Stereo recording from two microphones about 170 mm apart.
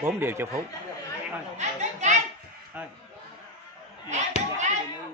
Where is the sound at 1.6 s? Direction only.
45° right (ahead or behind).